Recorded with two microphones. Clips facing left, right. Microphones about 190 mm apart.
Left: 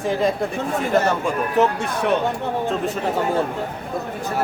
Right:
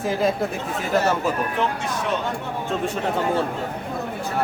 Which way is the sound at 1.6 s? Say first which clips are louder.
Left 9 dB; 40° left (ahead or behind).